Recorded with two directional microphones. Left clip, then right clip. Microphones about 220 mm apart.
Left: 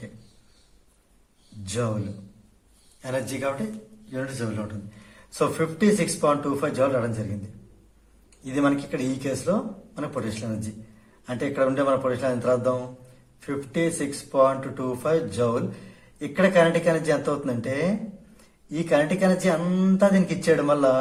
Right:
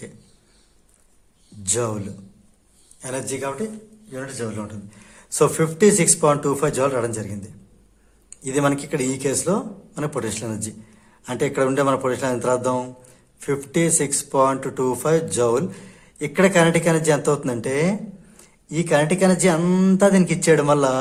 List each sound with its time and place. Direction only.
1.6 s a man's voice: 40° right (ahead or behind)
3.0 s a man's voice: 30° right (ahead or behind)
5.3 s speech: 40° right (ahead or behind)
8.5 s speech: 40° right (ahead or behind)
11.3 s speech: 40° right (ahead or behind)